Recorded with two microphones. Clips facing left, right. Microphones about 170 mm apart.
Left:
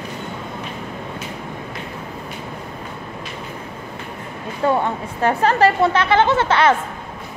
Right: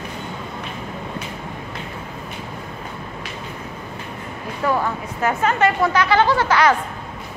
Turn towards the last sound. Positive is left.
turn(degrees=25)  # may be behind; listen again after turning